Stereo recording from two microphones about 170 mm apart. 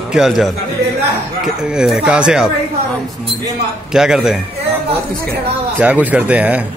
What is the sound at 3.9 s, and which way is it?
Speech, 5° right (ahead or behind).